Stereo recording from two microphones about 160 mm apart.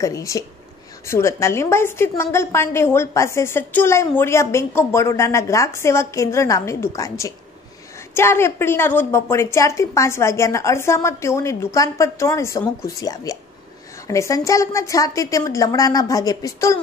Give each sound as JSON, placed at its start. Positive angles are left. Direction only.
{"t": 0.0, "sound": "a woman's voice", "side_deg": 20}